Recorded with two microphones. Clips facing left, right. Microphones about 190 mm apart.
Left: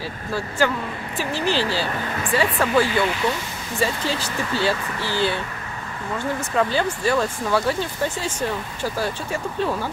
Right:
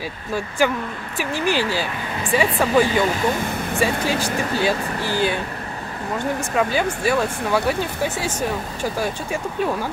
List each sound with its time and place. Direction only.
0.6 s speech: 15° right (ahead or behind)
3.1 s speech: 50° right (ahead or behind)
4.0 s speech: 15° right (ahead or behind)
6.5 s speech: 10° right (ahead or behind)